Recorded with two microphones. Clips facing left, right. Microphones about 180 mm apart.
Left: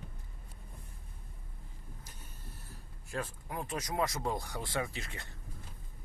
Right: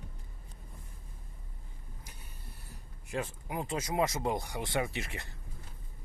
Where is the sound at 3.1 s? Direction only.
20° right (ahead or behind).